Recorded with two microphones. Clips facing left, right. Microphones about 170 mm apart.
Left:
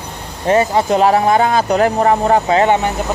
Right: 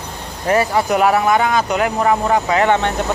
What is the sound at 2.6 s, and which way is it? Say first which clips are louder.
Speech: left 2 dB; 15° left (ahead or behind).